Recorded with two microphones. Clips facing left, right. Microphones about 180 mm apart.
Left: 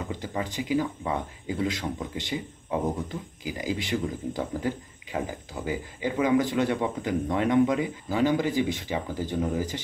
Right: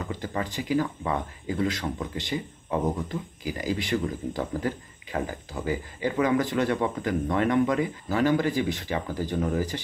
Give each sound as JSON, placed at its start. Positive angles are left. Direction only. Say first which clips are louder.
{"t": 0.0, "sound": "speech", "louder": "right 1 dB", "side_deg": 15}